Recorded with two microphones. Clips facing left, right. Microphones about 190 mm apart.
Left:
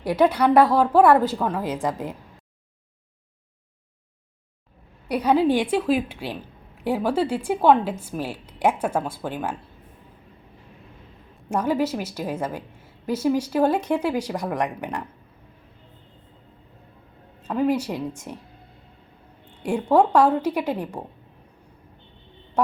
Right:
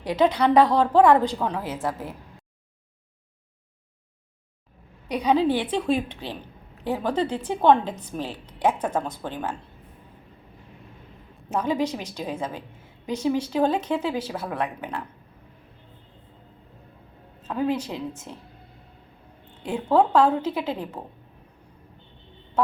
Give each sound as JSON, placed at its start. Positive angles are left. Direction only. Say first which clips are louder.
{"t": 0.0, "sound": "a woman's voice", "louder": "left 2 dB", "side_deg": 10}
{"t": 1.6, "sound": "a woman's voice", "louder": "left 3 dB", "side_deg": 15}
{"t": 5.0, "sound": "a woman's voice", "louder": "left 2 dB", "side_deg": 10}
{"t": 11.4, "sound": "a woman's voice", "louder": "left 2 dB", "side_deg": 10}
{"t": 17.5, "sound": "a woman's voice", "louder": "left 3 dB", "side_deg": 10}
{"t": 19.6, "sound": "a woman's voice", "louder": "left 2 dB", "side_deg": 10}